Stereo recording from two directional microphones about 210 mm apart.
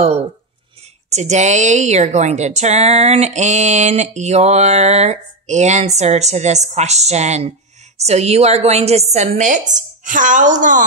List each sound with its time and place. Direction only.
1.1 s a woman's voice: 35° right (ahead or behind)